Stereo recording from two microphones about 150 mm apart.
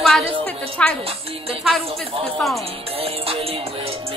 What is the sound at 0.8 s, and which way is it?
Speech, 10° left (ahead or behind).